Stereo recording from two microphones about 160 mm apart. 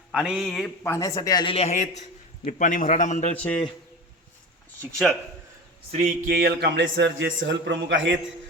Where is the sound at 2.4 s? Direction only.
55° left (ahead or behind).